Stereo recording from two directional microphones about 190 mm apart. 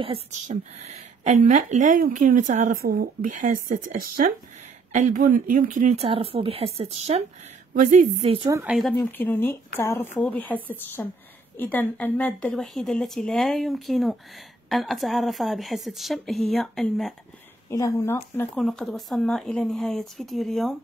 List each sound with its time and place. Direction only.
0.0 s speech: 30° right (ahead or behind)
0.5 s speech: 40° right (ahead or behind)
7.7 s speech: 45° right (ahead or behind)
8.5 s speech: 15° right (ahead or behind)
8.9 s a woman's voice: 10° left (ahead or behind)
17.6 s speech: 15° left (ahead or behind)
18.5 s a woman's voice: centre (ahead or behind)